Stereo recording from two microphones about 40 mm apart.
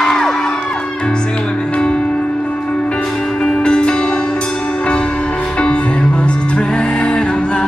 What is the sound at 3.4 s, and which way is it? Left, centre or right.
Music, left.